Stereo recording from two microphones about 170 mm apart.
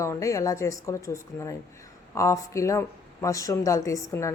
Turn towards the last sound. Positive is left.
turn(degrees=15)  # may be behind; listen again after turning